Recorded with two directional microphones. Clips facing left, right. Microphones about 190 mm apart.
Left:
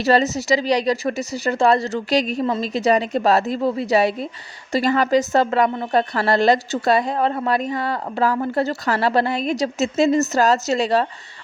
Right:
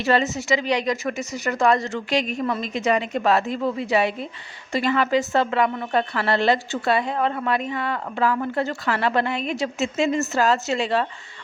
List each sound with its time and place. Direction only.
0.0 s a woman's voice: 35° left (ahead or behind)